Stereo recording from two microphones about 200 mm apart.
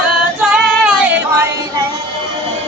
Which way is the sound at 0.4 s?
5° right (ahead or behind).